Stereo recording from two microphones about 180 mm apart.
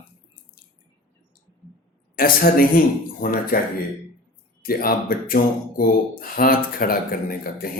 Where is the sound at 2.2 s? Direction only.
55° left (ahead or behind).